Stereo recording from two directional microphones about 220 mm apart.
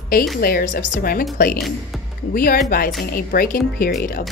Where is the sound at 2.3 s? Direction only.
40° left (ahead or behind).